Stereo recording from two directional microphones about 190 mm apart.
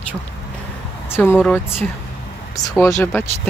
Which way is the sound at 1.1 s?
10° left (ahead or behind).